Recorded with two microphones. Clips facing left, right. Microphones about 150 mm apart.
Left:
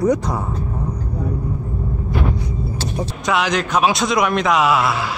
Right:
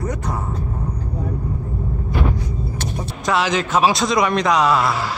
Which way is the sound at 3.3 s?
Centre (ahead or behind).